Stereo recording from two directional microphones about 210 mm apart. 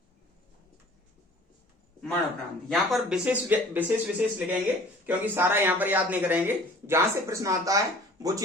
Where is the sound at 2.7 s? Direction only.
Centre (ahead or behind).